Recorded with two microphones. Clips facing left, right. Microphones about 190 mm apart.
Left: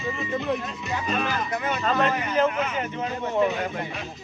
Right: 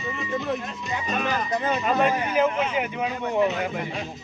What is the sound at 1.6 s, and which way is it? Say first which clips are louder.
Speech: right 3 dB; 30° right (ahead or behind).